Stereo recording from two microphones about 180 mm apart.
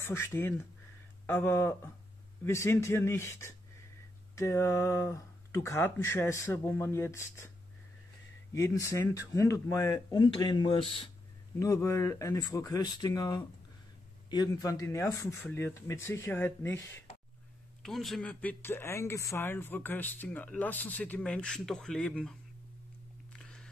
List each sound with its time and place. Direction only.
0.0 s speech: 15° left (ahead or behind)
8.5 s speech: 15° left (ahead or behind)
11.6 s speech: 15° left (ahead or behind)
17.8 s speech: centre (ahead or behind)
23.3 s single-lens reflex camera: 5° left (ahead or behind)